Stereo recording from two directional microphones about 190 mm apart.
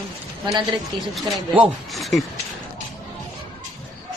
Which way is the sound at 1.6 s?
Centre (ahead or behind).